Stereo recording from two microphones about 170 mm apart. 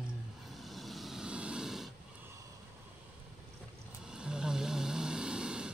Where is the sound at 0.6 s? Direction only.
Centre (ahead or behind).